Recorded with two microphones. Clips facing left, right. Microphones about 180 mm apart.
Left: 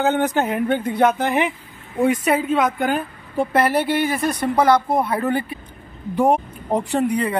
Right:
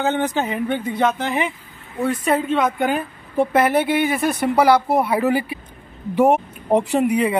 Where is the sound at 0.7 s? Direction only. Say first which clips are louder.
Left 3 dB; 55° left (ahead or behind).